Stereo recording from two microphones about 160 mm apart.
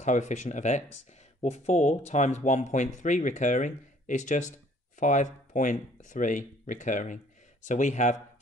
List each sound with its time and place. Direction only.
0.0 s speech: 45° left (ahead or behind)